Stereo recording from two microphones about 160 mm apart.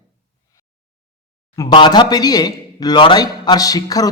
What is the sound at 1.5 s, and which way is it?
Speech, 25° left (ahead or behind).